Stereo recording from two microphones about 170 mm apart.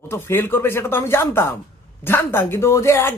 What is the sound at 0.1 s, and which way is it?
Speech, 15° left (ahead or behind).